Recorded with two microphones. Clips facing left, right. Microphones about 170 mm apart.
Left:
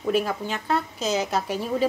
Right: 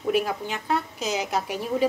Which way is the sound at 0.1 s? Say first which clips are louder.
Left 1 dB; 15° right (ahead or behind).